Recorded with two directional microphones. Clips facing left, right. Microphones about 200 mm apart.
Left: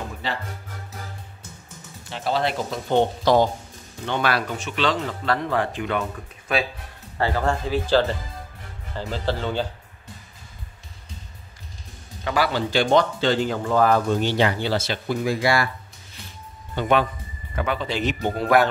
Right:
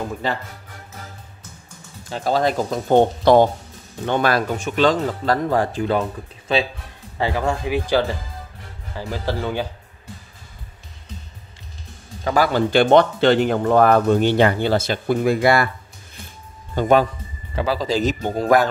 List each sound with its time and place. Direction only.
0.2 s speech: 50° right (ahead or behind)
2.0 s speech: 40° right (ahead or behind)
7.2 s speech: 15° right (ahead or behind)
12.3 s speech: 45° right (ahead or behind)
16.7 s speech: 40° right (ahead or behind)